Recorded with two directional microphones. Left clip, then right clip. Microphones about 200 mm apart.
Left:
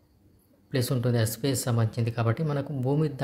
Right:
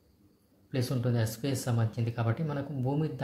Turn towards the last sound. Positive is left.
turn(degrees=30)  # may be behind; listen again after turning